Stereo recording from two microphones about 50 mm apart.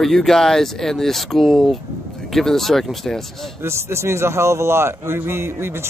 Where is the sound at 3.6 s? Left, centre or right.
Right.